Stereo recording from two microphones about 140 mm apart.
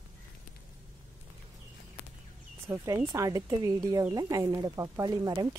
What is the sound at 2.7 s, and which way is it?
Speech, 20° right (ahead or behind).